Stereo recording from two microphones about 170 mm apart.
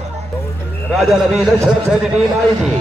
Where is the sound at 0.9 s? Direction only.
Centre (ahead or behind).